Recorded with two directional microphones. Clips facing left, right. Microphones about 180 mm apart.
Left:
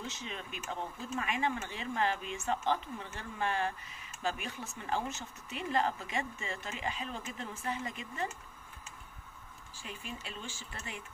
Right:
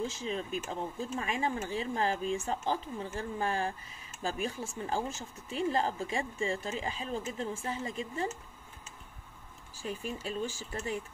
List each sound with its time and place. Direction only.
0.0 s speech: 30° right (ahead or behind)
9.8 s speech: 40° right (ahead or behind)